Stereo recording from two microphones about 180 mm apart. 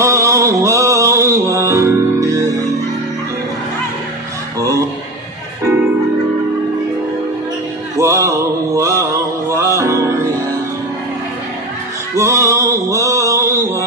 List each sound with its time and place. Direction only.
0.0 s music: 15° right (ahead or behind)
4.6 s a sound: 20° right (ahead or behind)
8.0 s mantra: 15° right (ahead or behind)
9.5 s music: 15° right (ahead or behind)
12.2 s male singing: 15° right (ahead or behind)